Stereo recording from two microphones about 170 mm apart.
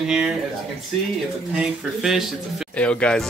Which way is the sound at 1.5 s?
5° right (ahead or behind).